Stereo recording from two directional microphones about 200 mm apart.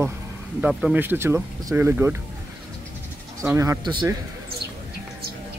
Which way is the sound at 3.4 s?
15° right (ahead or behind).